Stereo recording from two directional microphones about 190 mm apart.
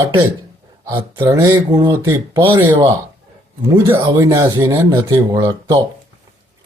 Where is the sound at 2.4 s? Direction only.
25° right (ahead or behind).